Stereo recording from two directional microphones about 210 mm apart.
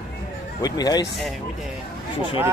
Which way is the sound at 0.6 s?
20° left (ahead or behind).